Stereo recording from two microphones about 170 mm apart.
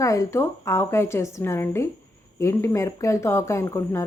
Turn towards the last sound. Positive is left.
turn(degrees=15)  # may be behind; listen again after turning